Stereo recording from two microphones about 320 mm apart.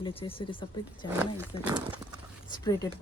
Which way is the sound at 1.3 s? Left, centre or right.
Centre.